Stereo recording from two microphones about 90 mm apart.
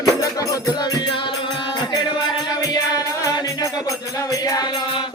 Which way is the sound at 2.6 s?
35° left (ahead or behind).